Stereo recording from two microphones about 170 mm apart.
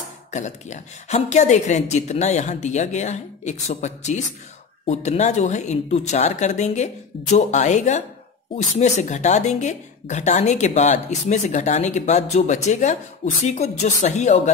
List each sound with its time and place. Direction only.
0.3 s a woman's voice: 45° left (ahead or behind)